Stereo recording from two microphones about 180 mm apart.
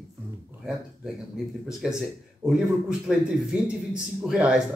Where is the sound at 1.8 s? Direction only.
Centre (ahead or behind).